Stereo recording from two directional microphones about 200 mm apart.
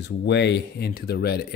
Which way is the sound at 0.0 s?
60° left (ahead or behind).